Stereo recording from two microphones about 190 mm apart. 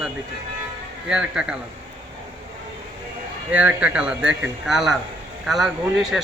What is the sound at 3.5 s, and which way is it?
Speech, 10° right (ahead or behind).